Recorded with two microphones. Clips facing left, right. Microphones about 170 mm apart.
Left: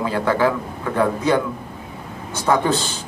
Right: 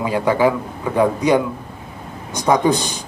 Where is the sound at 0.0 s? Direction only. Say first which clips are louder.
Right 2 dB; 15° right (ahead or behind).